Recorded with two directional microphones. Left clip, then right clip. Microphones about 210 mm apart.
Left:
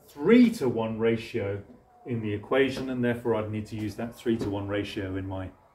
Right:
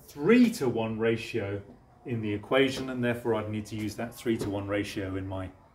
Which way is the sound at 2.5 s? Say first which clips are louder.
Left 1 dB; 35° right (ahead or behind).